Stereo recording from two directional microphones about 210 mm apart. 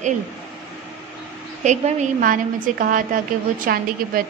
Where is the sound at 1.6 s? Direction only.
35° right (ahead or behind).